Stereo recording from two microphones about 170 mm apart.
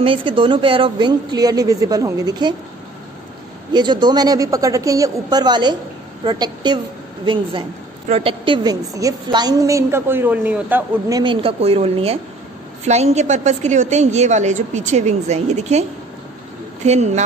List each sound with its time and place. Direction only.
0.0 s a woman's voice: 30° right (ahead or behind)
3.7 s a woman's voice: 25° right (ahead or behind)
11.4 s a woman's voice: 35° right (ahead or behind)
16.8 s a woman's voice: 40° right (ahead or behind)